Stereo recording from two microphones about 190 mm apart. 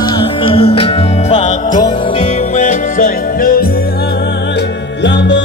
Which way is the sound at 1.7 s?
20° left (ahead or behind).